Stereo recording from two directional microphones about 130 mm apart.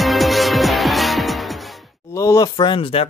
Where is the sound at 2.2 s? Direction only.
25° left (ahead or behind).